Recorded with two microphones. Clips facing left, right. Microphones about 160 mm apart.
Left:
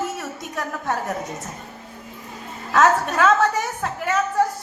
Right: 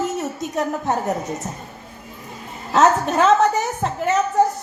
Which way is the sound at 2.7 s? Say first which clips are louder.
Right 2 dB; 20° right (ahead or behind).